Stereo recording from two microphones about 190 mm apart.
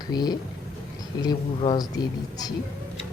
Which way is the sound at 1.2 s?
25° left (ahead or behind).